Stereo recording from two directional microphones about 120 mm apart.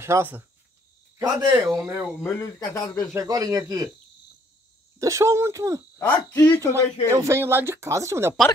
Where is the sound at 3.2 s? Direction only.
30° right (ahead or behind).